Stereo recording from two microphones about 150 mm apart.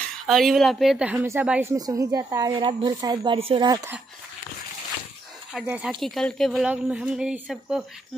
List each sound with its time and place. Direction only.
0.3 s a woman's voice: centre (ahead or behind); by 3.3 s 25° right (ahead or behind)
3.3 s speech: 40° right (ahead or behind)
3.6 s speech: 25° right (ahead or behind)
5.7 s a woman's voice: 10° right (ahead or behind)